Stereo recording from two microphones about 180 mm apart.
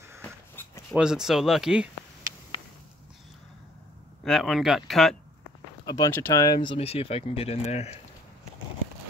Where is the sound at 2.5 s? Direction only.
30° left (ahead or behind).